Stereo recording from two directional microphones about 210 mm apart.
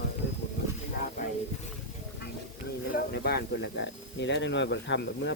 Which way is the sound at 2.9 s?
50° left (ahead or behind).